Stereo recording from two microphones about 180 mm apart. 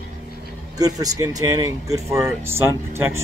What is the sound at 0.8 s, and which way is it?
Speech, 20° right (ahead or behind).